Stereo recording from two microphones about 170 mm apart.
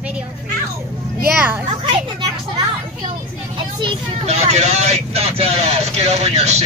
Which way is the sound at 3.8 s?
35° right (ahead or behind).